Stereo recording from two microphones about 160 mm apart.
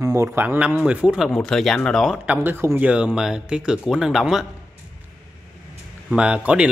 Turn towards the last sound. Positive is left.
turn(degrees=-5)  # may be behind; listen again after turning